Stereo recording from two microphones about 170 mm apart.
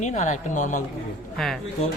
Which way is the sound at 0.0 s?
45° left (ahead or behind).